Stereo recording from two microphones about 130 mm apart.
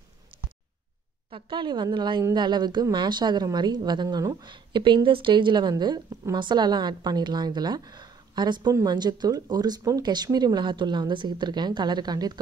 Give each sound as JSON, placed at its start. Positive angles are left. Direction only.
{"t": 1.3, "sound": "a woman's voice", "side_deg": -35}